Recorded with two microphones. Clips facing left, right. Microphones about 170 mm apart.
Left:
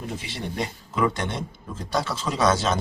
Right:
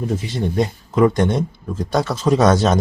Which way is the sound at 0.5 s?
40° right (ahead or behind).